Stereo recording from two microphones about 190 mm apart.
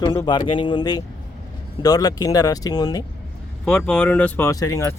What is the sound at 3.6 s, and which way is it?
Speech, 5° left (ahead or behind).